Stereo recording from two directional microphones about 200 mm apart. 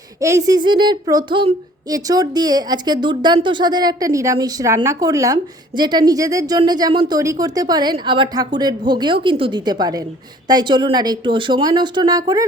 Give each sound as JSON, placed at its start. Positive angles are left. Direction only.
{"t": 0.2, "sound": "speech", "side_deg": -15}